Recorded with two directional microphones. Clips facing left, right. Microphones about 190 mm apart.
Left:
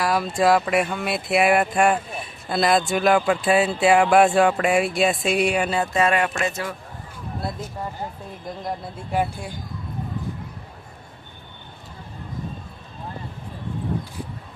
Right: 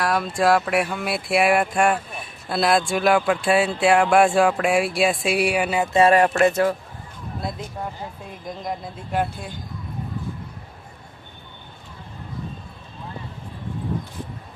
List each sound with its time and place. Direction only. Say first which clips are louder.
0.0 s a sound: even; centre (ahead or behind)
0.3 s speech: left 1 dB; centre (ahead or behind)
5.9 s speech: right 8 dB; 35° right (ahead or behind)
6.4 s a man's voice: right 9 dB; 50° right (ahead or behind)